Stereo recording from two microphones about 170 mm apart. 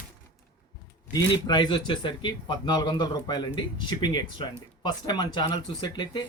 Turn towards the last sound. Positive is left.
turn(degrees=25)  # may be behind; listen again after turning